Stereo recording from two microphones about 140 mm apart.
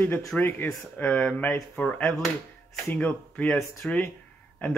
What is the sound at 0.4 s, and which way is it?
A man's voice, 15° left (ahead or behind).